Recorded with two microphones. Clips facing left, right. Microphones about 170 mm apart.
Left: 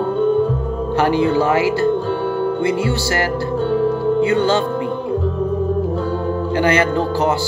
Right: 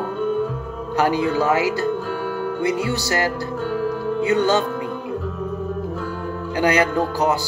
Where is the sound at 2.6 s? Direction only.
15° right (ahead or behind).